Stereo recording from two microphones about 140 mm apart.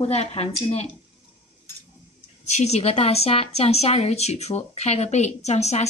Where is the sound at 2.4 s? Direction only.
50° left (ahead or behind).